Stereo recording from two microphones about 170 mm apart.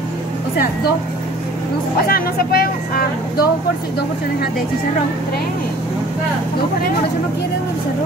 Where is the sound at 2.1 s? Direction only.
60° left (ahead or behind).